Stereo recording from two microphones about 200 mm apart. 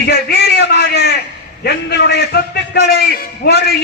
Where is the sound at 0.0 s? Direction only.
50° left (ahead or behind).